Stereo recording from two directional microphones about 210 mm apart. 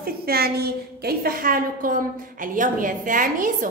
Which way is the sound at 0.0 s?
45° right (ahead or behind).